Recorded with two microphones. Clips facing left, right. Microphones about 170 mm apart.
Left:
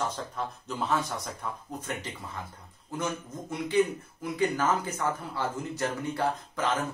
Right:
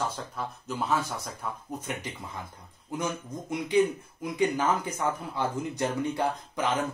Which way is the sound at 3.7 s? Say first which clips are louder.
Right 2 dB; 15° right (ahead or behind).